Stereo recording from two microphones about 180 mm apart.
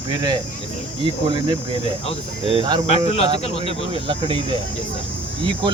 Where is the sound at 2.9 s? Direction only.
35° left (ahead or behind).